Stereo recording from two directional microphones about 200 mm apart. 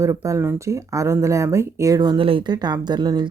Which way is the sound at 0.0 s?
15° right (ahead or behind).